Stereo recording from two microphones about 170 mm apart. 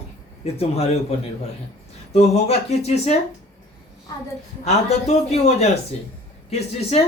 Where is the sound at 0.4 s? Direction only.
35° left (ahead or behind).